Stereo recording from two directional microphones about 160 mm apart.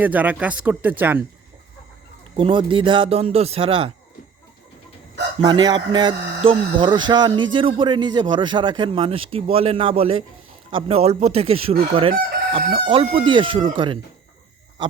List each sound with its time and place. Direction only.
0.0 s speech: 10° right (ahead or behind)
2.3 s speech: 30° right (ahead or behind)
5.4 s speech: 30° right (ahead or behind)